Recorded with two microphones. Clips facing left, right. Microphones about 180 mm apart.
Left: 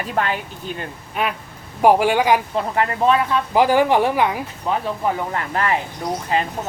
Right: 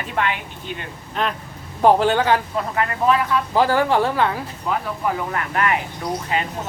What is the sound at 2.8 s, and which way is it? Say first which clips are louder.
Speech: left 2 dB; 25° left (ahead or behind).